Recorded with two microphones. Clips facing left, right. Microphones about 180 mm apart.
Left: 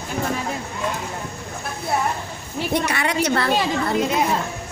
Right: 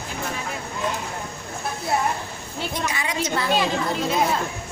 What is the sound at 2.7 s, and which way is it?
Speech, 65° left (ahead or behind).